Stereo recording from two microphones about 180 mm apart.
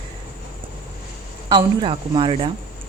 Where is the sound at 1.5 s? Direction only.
25° right (ahead or behind).